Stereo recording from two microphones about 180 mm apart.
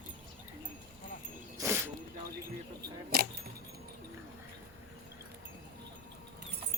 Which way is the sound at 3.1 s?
60° right (ahead or behind).